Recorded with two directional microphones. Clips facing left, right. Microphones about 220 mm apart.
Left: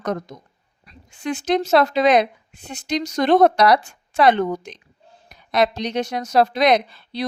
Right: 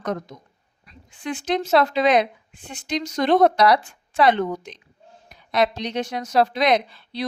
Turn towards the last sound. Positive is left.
turn(degrees=40)  # may be behind; listen again after turning